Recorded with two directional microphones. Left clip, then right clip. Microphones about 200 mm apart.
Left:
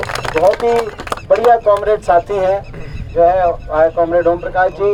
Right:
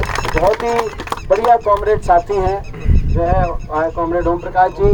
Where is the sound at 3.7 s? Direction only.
45° left (ahead or behind).